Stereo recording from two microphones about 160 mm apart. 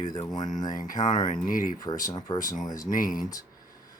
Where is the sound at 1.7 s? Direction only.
25° left (ahead or behind).